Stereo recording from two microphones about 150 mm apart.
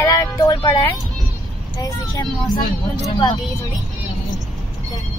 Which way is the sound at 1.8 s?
25° left (ahead or behind).